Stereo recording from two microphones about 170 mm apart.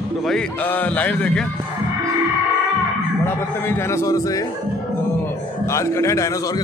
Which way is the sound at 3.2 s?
15° left (ahead or behind).